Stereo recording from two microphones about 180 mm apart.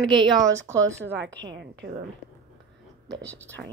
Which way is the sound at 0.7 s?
15° right (ahead or behind).